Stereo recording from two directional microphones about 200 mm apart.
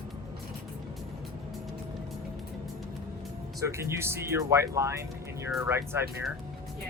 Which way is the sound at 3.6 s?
15° right (ahead or behind).